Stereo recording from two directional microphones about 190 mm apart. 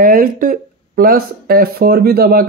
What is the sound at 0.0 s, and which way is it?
Speech, 50° right (ahead or behind).